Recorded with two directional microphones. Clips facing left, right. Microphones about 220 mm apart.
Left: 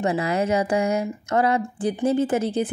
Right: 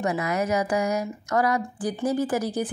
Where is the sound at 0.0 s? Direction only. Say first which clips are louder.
Left 3 dB; 30° left (ahead or behind).